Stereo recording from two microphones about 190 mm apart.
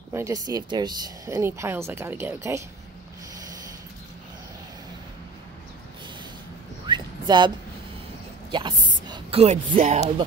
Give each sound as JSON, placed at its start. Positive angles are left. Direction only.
{"t": 0.1, "sound": "speech", "side_deg": -15}
{"t": 6.9, "sound": "a sound", "side_deg": -25}
{"t": 8.5, "sound": "speech", "side_deg": -25}